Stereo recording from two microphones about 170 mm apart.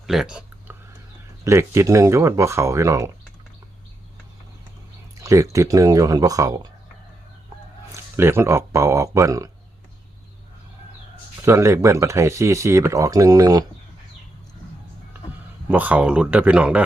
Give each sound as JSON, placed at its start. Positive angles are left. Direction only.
{"t": 0.1, "sound": "a sound", "side_deg": -5}
{"t": 1.5, "sound": "speech", "side_deg": -15}
{"t": 5.2, "sound": "speech", "side_deg": -20}
{"t": 7.9, "sound": "speech", "side_deg": -15}
{"t": 11.4, "sound": "speech", "side_deg": -15}
{"t": 15.7, "sound": "speech", "side_deg": -10}